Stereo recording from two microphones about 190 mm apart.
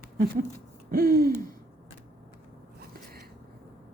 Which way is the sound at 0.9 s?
50° right (ahead or behind).